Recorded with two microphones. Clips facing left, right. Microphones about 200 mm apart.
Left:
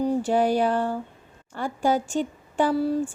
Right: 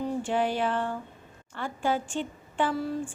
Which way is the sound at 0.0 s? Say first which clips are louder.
Left 6 dB; 40° left (ahead or behind).